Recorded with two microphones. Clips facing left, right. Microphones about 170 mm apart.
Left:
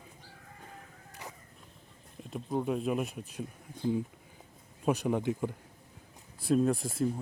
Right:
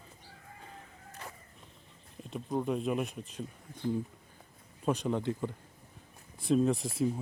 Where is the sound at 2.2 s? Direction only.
Centre (ahead or behind).